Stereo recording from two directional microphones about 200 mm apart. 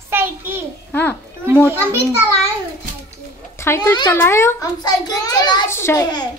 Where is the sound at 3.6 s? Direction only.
15° left (ahead or behind).